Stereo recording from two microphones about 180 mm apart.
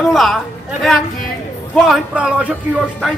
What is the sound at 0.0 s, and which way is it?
Speech, centre (ahead or behind).